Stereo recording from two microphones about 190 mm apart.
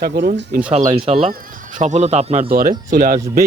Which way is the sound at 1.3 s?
50° right (ahead or behind).